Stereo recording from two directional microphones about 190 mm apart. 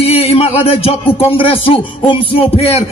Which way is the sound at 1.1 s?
30° left (ahead or behind).